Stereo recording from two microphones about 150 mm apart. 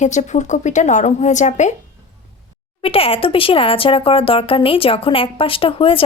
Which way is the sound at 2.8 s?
40° left (ahead or behind).